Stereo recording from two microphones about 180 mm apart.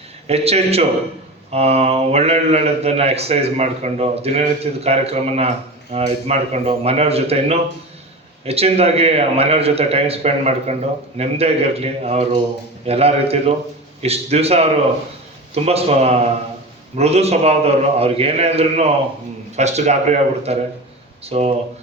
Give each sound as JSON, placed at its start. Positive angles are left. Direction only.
{"t": 0.3, "sound": "a man's voice", "side_deg": -35}